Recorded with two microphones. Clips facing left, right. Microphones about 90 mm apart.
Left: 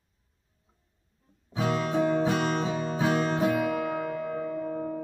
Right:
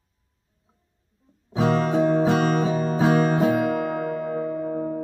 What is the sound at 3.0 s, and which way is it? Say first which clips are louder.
Music: right 6 dB; 25° right (ahead or behind).